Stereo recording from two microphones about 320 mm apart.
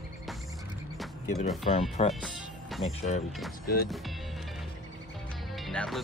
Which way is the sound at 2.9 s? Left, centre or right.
Centre.